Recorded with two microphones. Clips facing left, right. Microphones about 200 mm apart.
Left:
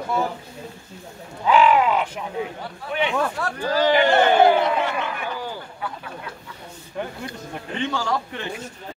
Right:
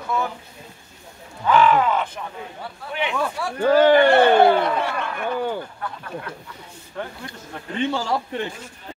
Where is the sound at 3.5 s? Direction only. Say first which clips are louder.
Right 7 dB; 55° right (ahead or behind).